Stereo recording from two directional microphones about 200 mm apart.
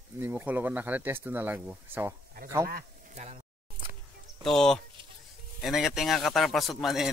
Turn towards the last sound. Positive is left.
turn(degrees=0)  # may be behind; listen again after turning